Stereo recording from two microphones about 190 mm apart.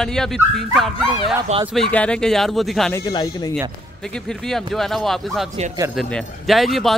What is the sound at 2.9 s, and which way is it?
Speech, 20° left (ahead or behind).